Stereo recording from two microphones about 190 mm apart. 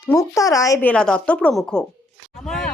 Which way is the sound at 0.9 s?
5° left (ahead or behind).